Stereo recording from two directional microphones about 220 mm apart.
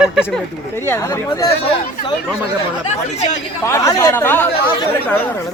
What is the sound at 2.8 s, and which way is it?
Speech, 30° left (ahead or behind).